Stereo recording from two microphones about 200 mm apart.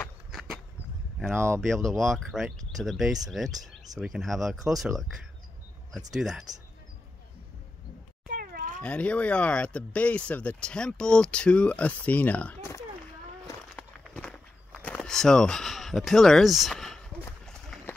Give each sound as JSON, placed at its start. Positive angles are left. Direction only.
{"t": 0.0, "sound": "a sound", "side_deg": 0}
{"t": 1.3, "sound": "speech", "side_deg": -15}
{"t": 1.7, "sound": "speech", "side_deg": 0}
{"t": 8.3, "sound": "cat", "side_deg": -45}
{"t": 8.8, "sound": "speech", "side_deg": 5}
{"t": 13.7, "sound": "walk", "side_deg": 5}
{"t": 14.9, "sound": "speech", "side_deg": 5}
{"t": 17.5, "sound": "run", "side_deg": 5}